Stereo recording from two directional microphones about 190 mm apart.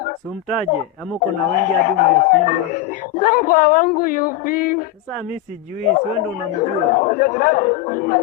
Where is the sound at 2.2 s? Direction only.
45° left (ahead or behind).